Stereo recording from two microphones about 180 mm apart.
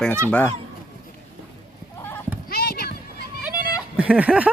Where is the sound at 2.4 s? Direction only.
60° left (ahead or behind).